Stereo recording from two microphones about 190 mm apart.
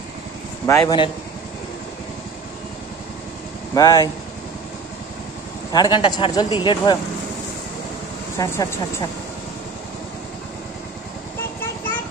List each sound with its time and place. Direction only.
0.7 s speech: 20° left (ahead or behind)
3.7 s speech: 20° left (ahead or behind)
5.7 s speech: 20° left (ahead or behind)
8.4 s speech: 15° left (ahead or behind)